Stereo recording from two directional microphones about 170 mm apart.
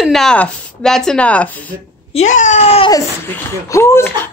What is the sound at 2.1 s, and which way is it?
Speech, 45° left (ahead or behind).